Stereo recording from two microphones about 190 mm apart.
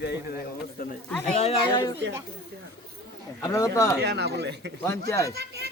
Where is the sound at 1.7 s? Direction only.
20° left (ahead or behind).